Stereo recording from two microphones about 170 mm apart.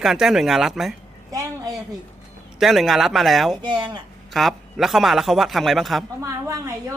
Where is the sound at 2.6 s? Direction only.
Centre (ahead or behind).